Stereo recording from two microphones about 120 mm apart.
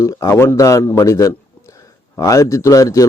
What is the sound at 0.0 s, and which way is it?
Speech, 25° left (ahead or behind).